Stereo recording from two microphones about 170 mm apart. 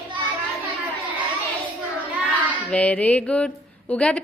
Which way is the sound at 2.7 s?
10° left (ahead or behind).